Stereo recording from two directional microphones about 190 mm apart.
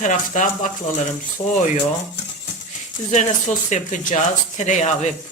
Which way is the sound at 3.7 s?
40° left (ahead or behind).